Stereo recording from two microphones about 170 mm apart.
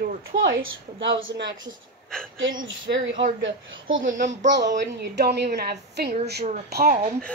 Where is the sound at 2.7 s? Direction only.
90° right.